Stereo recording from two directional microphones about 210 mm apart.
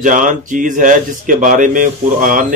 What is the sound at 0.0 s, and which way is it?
Speech, 40° right (ahead or behind).